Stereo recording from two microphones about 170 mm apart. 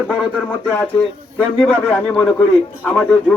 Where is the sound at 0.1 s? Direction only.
5° left (ahead or behind).